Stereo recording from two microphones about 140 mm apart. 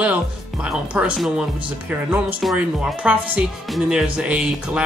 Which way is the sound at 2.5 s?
10° right (ahead or behind).